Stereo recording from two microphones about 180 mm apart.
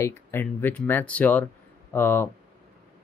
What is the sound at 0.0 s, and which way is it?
Speech, 10° left (ahead or behind).